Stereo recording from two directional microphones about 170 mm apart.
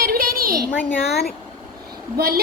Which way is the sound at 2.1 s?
65° right (ahead or behind).